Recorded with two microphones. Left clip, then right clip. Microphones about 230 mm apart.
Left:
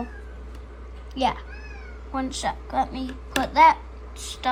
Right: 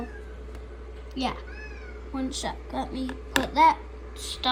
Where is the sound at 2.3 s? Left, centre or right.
Centre.